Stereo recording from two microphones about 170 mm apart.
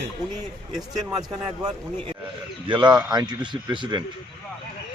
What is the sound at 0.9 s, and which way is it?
Speech, 25° right (ahead or behind).